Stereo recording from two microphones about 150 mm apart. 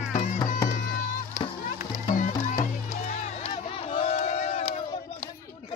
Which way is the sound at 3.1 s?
45° left (ahead or behind).